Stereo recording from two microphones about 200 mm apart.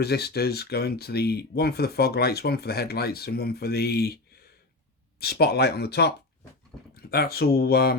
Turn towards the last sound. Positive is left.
turn(degrees=50)  # may be behind; listen again after turning